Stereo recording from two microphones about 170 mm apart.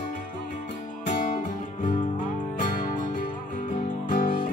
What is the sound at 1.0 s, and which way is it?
Music, 50° left (ahead or behind).